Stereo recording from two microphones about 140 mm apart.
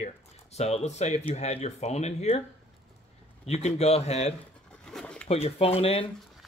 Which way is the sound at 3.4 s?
50° left (ahead or behind).